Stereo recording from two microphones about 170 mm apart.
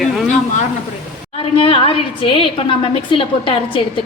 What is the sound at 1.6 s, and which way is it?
A woman's voice, 30° left (ahead or behind).